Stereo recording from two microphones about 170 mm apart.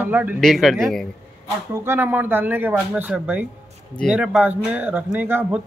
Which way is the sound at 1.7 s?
15° right (ahead or behind).